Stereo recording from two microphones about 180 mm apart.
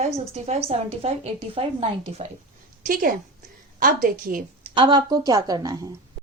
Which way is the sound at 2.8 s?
50° right (ahead or behind).